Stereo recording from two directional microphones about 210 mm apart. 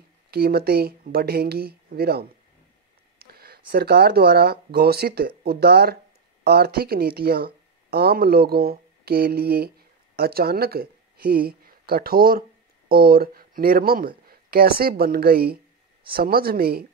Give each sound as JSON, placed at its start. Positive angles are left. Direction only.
{"t": 0.3, "sound": "speech", "side_deg": -50}